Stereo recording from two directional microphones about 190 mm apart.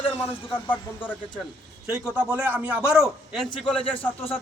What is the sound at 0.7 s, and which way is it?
Speech, 10° left (ahead or behind).